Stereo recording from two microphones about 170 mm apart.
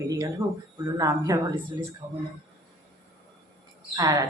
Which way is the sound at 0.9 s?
20° right (ahead or behind).